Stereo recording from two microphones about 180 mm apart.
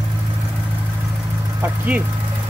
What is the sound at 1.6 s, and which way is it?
Speech, 10° right (ahead or behind).